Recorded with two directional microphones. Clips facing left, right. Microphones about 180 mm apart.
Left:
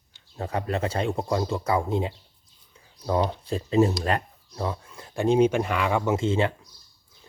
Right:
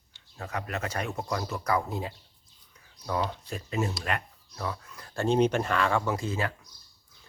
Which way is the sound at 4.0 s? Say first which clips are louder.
Left 6 dB; 30° left (ahead or behind).